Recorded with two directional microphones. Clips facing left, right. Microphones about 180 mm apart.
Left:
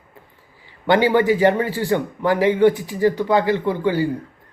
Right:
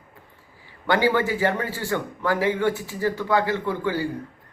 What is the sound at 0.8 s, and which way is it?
A man's voice, 20° left (ahead or behind).